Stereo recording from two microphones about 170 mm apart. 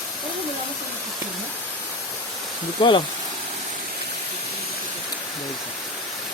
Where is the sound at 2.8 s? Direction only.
30° left (ahead or behind).